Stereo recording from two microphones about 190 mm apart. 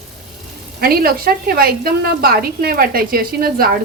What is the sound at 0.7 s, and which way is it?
A woman's voice, 50° right (ahead or behind).